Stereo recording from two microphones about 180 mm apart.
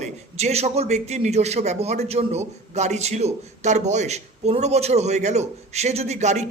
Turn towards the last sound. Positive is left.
turn(degrees=-40)  # may be behind; listen again after turning